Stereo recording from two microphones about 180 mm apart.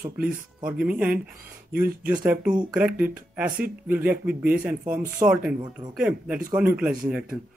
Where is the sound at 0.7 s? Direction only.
5° right (ahead or behind).